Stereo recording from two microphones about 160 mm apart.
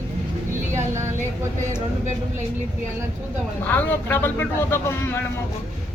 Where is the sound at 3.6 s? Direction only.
10° left (ahead or behind).